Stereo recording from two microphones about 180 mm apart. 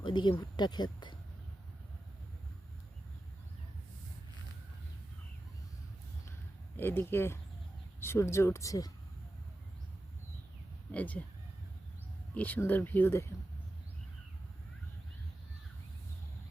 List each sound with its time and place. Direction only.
0.0 s speech: 25° left (ahead or behind)
6.7 s speech: 10° left (ahead or behind)
10.9 s speech: 10° left (ahead or behind)
12.3 s speech: 10° left (ahead or behind)